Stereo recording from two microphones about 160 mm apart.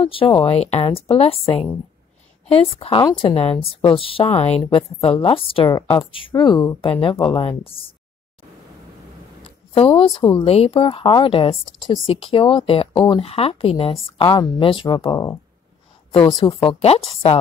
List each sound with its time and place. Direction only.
0.0 s speech: 35° left (ahead or behind)
9.4 s speech: 35° left (ahead or behind)